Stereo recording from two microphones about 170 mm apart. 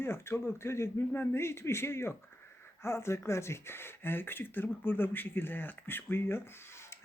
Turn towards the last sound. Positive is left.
turn(degrees=15)  # may be behind; listen again after turning